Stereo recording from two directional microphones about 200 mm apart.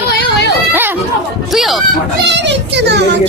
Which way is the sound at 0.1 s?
55° left (ahead or behind).